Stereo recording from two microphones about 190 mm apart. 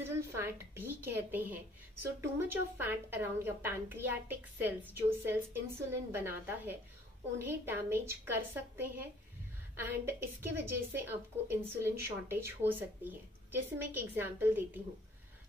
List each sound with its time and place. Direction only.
0.0 s a woman's voice: 15° right (ahead or behind)